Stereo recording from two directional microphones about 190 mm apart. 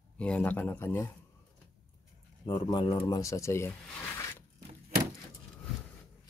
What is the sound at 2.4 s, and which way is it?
Speech, 25° left (ahead or behind).